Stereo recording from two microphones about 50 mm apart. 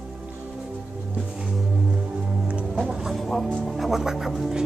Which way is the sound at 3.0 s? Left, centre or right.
Centre.